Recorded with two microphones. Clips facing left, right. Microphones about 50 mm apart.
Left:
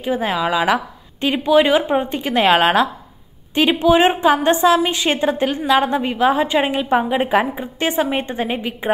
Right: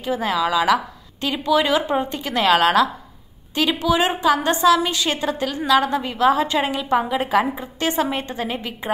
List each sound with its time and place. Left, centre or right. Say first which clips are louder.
0.0 s a woman's voice: left 2 dB; left